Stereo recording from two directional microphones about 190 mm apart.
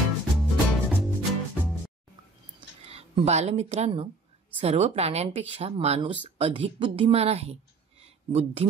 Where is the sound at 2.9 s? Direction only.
35° right (ahead or behind).